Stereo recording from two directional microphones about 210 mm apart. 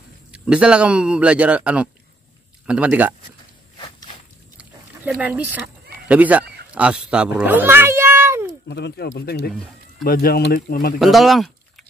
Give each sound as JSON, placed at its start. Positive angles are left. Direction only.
{"t": 0.3, "sound": "speech", "side_deg": -5}
{"t": 3.7, "sound": "walk", "side_deg": 20}
{"t": 4.6, "sound": "a sound", "side_deg": -5}
{"t": 6.0, "sound": "speech", "side_deg": -5}
{"t": 8.6, "sound": "speech", "side_deg": 55}
{"t": 11.0, "sound": "speech", "side_deg": 0}